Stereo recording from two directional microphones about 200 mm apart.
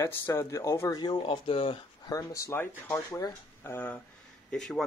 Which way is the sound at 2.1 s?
15° left (ahead or behind).